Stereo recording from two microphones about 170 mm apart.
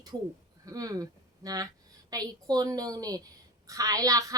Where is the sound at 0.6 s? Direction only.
20° right (ahead or behind).